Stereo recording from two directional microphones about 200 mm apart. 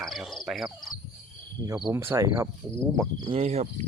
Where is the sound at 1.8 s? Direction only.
10° right (ahead or behind).